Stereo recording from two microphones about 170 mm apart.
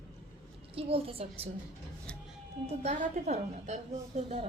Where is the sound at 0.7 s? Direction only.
35° right (ahead or behind).